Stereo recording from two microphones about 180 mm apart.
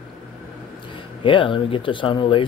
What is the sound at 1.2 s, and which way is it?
Speech, 30° left (ahead or behind).